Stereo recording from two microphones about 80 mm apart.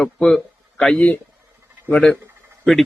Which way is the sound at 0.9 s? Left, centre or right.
Centre.